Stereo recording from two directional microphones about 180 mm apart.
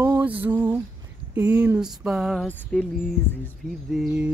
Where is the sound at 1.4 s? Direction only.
10° right (ahead or behind).